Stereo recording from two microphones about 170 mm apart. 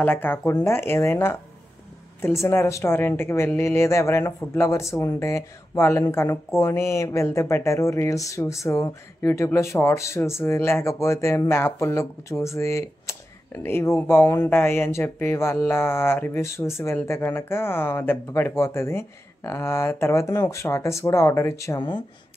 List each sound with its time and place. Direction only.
0.0 s speech: 10° left (ahead or behind)